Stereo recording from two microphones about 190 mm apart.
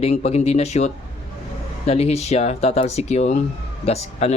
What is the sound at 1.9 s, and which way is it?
Speech, 35° left (ahead or behind).